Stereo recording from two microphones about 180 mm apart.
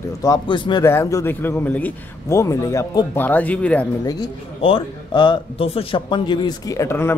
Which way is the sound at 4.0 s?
20° left (ahead or behind).